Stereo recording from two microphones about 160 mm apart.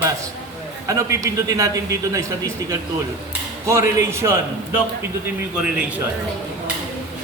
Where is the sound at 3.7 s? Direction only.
15° right (ahead or behind).